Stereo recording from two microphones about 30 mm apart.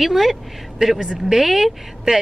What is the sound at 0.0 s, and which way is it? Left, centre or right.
A woman's voice, centre.